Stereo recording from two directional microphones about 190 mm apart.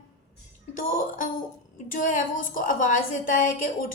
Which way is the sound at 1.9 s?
45° left (ahead or behind).